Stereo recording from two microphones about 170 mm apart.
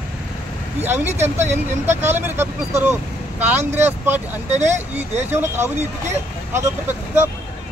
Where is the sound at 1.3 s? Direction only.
15° right (ahead or behind).